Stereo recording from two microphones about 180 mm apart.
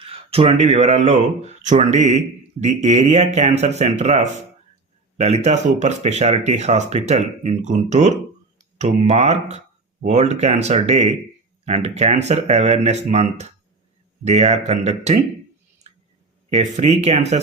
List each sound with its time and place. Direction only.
0.0 s speech: 35° right (ahead or behind)
16.5 s speech: 40° right (ahead or behind)